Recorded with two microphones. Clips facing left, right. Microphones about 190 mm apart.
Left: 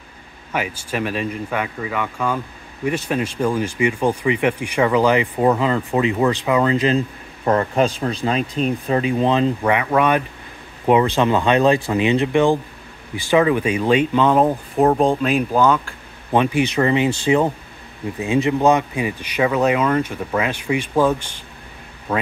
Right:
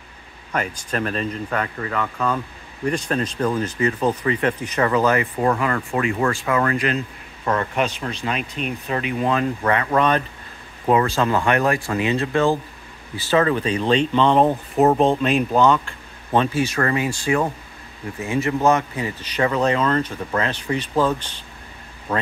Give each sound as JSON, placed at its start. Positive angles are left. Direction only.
{"t": 0.5, "sound": "speech", "side_deg": 5}
{"t": 9.6, "sound": "speech", "side_deg": 15}
{"t": 16.3, "sound": "speech", "side_deg": 15}